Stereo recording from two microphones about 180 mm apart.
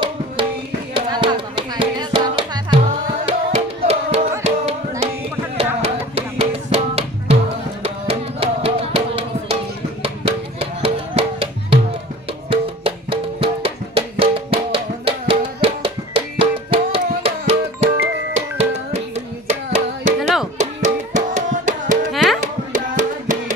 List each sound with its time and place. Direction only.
0.9 s music: 25° right (ahead or behind)
10.6 s music: 30° right (ahead or behind)
20.2 s music: centre (ahead or behind)
20.5 s music: 45° right (ahead or behind)
22.1 s music: centre (ahead or behind)
22.7 s music: 45° right (ahead or behind)